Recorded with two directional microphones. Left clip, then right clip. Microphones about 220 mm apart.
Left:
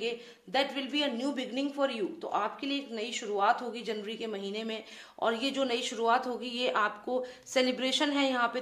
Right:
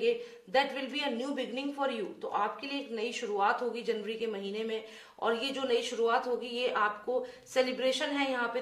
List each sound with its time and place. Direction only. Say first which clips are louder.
0.0 s a woman's voice: right 5 dB; 40° left (ahead or behind)